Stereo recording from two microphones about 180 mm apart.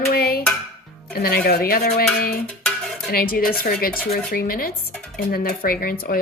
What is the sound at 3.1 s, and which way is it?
Dishes, 55° left (ahead or behind).